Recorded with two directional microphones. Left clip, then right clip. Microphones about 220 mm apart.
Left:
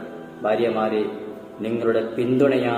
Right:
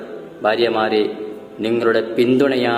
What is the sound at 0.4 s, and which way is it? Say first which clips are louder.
A man's voice: right 4 dB; 20° right (ahead or behind).